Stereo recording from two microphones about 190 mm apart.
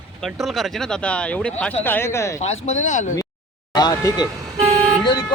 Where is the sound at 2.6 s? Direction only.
40° left (ahead or behind).